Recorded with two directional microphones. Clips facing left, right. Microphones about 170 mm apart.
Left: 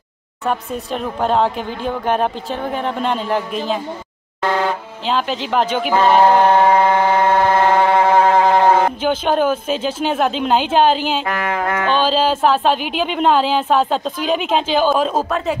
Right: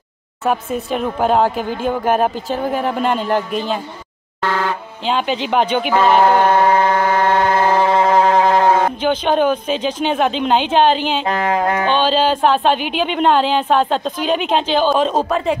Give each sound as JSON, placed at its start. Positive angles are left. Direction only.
{"t": 0.5, "sound": "a woman's voice", "side_deg": -5}
{"t": 5.0, "sound": "a woman's voice", "side_deg": 0}
{"t": 6.2, "sound": "siren", "side_deg": 15}
{"t": 8.1, "sound": "speech", "side_deg": 15}
{"t": 11.2, "sound": "music", "side_deg": -25}
{"t": 12.0, "sound": "a woman's voice", "side_deg": 5}